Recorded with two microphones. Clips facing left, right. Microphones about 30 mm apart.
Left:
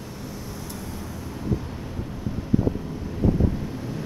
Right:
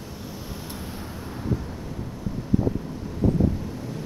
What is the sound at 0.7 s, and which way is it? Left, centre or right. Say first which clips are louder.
Vehicle: left 1 dB; right.